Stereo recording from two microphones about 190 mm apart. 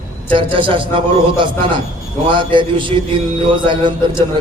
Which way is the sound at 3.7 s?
25° right (ahead or behind).